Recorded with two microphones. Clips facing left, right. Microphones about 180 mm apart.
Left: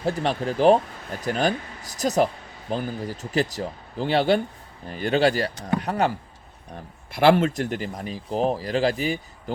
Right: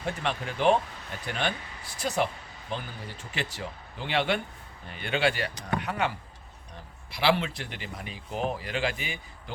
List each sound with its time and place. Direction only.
0.0 s speech: 35° left (ahead or behind)
7.1 s speech: 50° left (ahead or behind)